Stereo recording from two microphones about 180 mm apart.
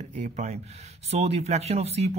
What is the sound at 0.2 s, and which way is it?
Speech, 40° right (ahead or behind).